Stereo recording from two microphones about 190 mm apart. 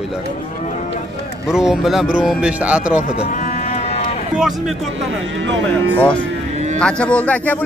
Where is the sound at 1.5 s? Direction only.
5° right (ahead or behind).